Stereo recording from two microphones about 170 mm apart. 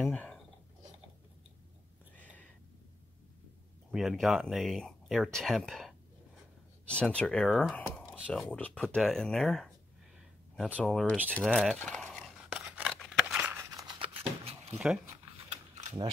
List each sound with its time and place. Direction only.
0.0 s speech: 10° left (ahead or behind)
3.9 s speech: centre (ahead or behind)
10.8 s speech: 5° left (ahead or behind)
11.2 s a sound: 5° left (ahead or behind); by 14.6 s 35° right (ahead or behind)
15.5 s mechanisms: 40° right (ahead or behind)